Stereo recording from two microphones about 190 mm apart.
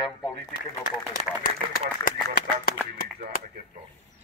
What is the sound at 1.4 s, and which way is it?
Speech, 45° left (ahead or behind).